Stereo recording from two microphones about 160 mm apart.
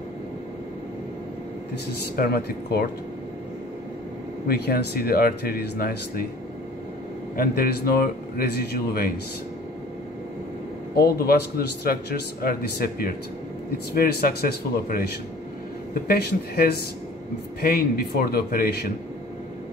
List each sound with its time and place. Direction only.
2.1 s speech: 75° left (ahead or behind)
4.5 s speech: 85° left
7.3 s speech: 70° left (ahead or behind)
11.0 s speech: 75° left (ahead or behind)